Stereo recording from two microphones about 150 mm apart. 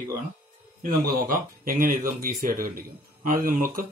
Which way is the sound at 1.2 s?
70° right (ahead or behind).